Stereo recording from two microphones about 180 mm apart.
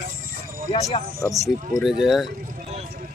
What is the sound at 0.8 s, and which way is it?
Speech, 15° left (ahead or behind).